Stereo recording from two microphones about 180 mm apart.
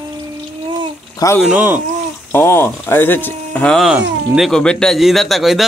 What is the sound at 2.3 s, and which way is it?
Speech, 10° left (ahead or behind).